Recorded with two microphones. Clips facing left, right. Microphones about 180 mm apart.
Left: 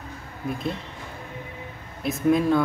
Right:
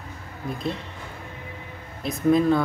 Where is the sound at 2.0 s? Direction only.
Centre (ahead or behind).